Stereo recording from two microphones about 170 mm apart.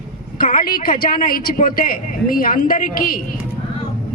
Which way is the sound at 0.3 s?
55° left (ahead or behind).